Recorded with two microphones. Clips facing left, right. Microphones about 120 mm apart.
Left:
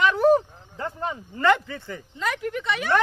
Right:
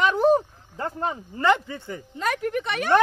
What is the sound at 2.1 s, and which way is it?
Speech, 45° right (ahead or behind).